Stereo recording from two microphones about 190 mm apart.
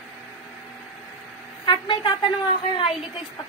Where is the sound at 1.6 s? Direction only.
25° left (ahead or behind).